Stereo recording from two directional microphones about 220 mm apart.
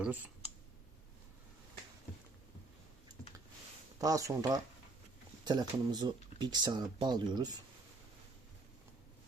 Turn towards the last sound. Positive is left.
turn(degrees=-20)  # may be behind; listen again after turning